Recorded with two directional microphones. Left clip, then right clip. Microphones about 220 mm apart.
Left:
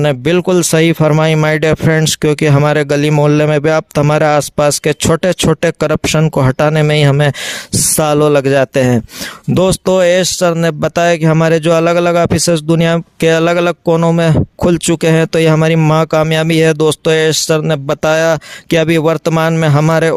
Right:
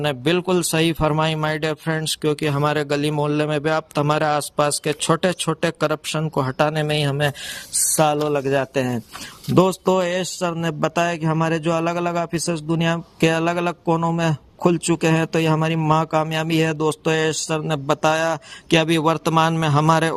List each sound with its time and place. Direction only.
0.0 s speech: 40° left (ahead or behind)